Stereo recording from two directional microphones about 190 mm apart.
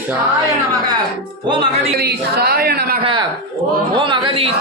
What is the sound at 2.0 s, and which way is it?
Speech, 55° right (ahead or behind).